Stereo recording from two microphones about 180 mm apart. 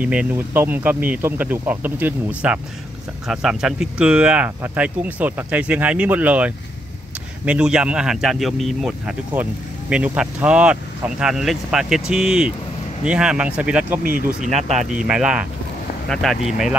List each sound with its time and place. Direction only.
0.0 s speech: 5° right (ahead or behind)
14.0 s speech: 45° right (ahead or behind)
14.7 s speech: centre (ahead or behind)